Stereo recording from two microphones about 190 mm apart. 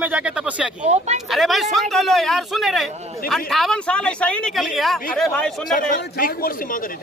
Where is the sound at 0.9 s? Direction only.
35° right (ahead or behind).